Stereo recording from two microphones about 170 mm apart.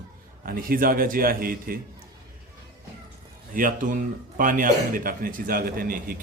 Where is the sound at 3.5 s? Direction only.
50° right (ahead or behind).